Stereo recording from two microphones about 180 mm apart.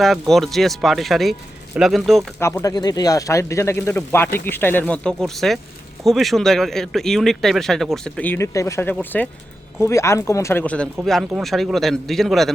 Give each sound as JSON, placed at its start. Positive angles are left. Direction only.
{"t": 0.0, "sound": "speech", "side_deg": 0}
{"t": 2.4, "sound": "speech", "side_deg": 15}